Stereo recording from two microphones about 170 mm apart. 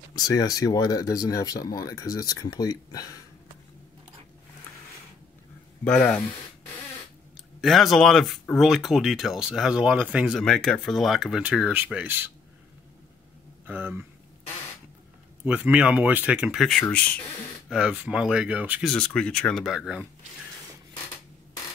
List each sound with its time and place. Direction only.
0.1 s speech: 20° left (ahead or behind)
5.9 s speech: 10° left (ahead or behind)
7.6 s speech: centre (ahead or behind)
13.7 s speech: 10° right (ahead or behind)
15.4 s speech: 10° right (ahead or behind); by 17.2 s 10° left (ahead or behind)
17.6 s speech: 5° right (ahead or behind)
18.9 s speech: 5° left (ahead or behind)